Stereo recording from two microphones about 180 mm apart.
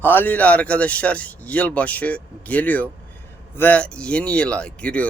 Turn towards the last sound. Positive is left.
turn(degrees=5)  # may be behind; listen again after turning